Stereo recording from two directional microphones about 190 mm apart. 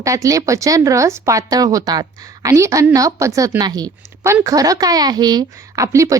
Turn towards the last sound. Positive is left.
turn(degrees=-15)  # may be behind; listen again after turning